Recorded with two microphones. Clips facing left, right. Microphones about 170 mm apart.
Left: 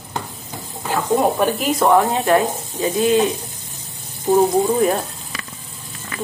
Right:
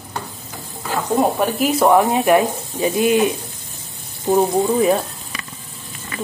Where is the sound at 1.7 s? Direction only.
10° right (ahead or behind).